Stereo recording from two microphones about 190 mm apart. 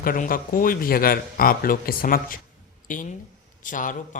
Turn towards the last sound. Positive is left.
turn(degrees=45)  # may be behind; listen again after turning